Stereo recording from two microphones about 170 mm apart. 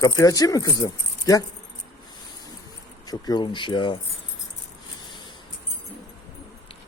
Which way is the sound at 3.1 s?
25° left (ahead or behind).